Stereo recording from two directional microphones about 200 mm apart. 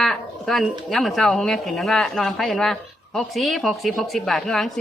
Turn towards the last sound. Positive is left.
turn(degrees=0)  # may be behind; listen again after turning